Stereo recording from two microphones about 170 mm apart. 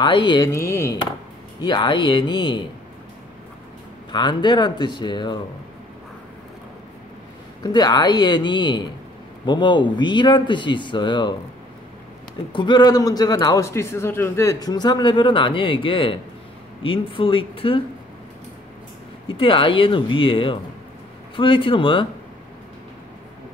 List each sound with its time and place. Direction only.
0.0 s a man's voice: 25° left (ahead or behind)
4.1 s a man's voice: 25° left (ahead or behind)
7.6 s a man's voice: 25° left (ahead or behind)
12.5 s a man's voice: 25° left (ahead or behind)
19.2 s speech: 30° left (ahead or behind)